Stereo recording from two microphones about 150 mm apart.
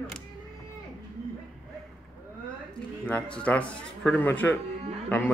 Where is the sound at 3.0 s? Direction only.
10° left (ahead or behind).